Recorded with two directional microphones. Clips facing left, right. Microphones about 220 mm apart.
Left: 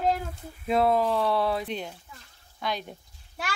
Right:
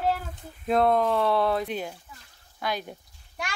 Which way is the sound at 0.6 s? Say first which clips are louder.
Right 1 dB; 5° left (ahead or behind).